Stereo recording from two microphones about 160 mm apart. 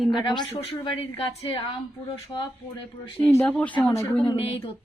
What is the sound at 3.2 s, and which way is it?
Speech, 10° left (ahead or behind).